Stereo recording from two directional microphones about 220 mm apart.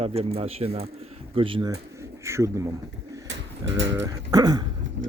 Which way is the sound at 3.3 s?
55° right (ahead or behind).